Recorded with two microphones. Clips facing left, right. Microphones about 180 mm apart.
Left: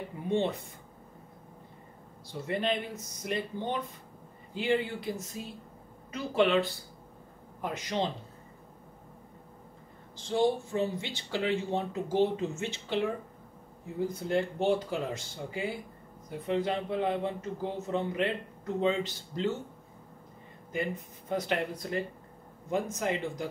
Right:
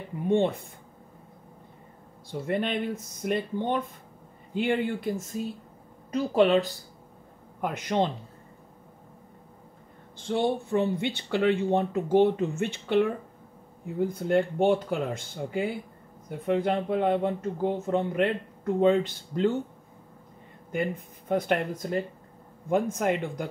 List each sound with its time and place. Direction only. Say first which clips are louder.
0.3 s speech: right 5 dB; 50° right (ahead or behind)
2.4 s speech: right 3 dB; 50° right (ahead or behind)
7.6 s speech: right 5 dB; 60° right (ahead or behind)
10.1 s speech: right 1 dB; 60° right (ahead or behind)
20.7 s speech: right 4 dB; 55° right (ahead or behind)
22.7 s speech: right 6 dB; 55° right (ahead or behind)